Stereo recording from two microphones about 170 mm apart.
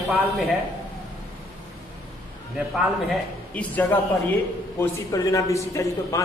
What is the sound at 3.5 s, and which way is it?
Speech, 10° left (ahead or behind).